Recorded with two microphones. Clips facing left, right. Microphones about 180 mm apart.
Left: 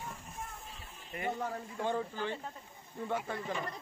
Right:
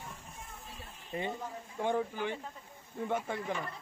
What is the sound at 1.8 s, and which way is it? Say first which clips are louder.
Speech: right 3 dB; 15° right (ahead or behind).